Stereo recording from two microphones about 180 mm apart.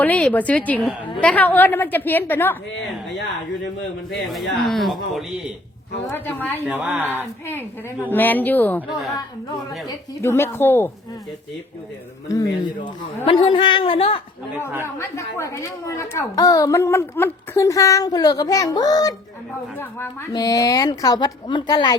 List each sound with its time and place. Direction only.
0.0 s a woman's voice: 5° left (ahead or behind)
4.6 s speech: centre (ahead or behind)
6.1 s a woman's voice: 10° left (ahead or behind)
6.6 s speech: 10° right (ahead or behind)
7.4 s a woman's voice: 10° left (ahead or behind)
9.1 s a woman's voice: 20° left (ahead or behind)
12.3 s speech: 20° left (ahead or behind)
13.2 s speech: 30° left (ahead or behind)
14.9 s a woman's voice: 15° left (ahead or behind)